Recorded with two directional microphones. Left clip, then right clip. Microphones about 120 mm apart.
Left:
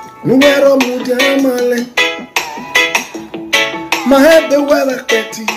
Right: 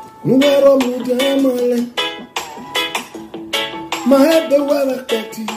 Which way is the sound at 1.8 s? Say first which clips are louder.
Left 7 dB; 30° left (ahead or behind).